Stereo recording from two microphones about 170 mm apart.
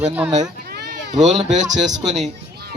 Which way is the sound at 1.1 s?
45° right (ahead or behind).